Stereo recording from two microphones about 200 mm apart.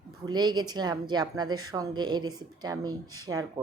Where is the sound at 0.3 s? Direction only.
20° right (ahead or behind).